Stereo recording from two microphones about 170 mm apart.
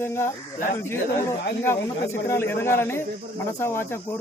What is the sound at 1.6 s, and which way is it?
Speech, 15° left (ahead or behind).